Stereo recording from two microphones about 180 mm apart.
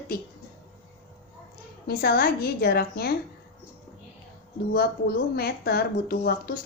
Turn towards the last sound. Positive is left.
turn(degrees=60)  # may be behind; listen again after turning